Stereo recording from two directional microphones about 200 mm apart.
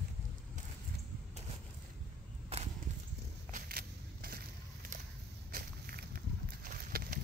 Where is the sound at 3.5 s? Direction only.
45° right (ahead or behind).